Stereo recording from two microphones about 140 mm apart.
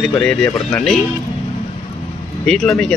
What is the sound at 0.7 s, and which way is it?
Speech, 5° left (ahead or behind).